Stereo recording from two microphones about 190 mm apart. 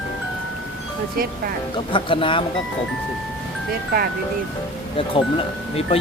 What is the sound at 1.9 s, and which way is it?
Speech, 25° left (ahead or behind).